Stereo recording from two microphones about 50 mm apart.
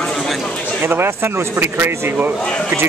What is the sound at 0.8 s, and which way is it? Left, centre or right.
Speech, right.